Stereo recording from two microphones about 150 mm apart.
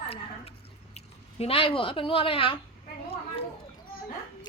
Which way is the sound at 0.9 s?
40° left (ahead or behind).